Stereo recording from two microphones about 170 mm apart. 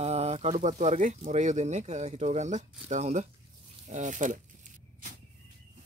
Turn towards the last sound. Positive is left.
turn(degrees=-45)  # may be behind; listen again after turning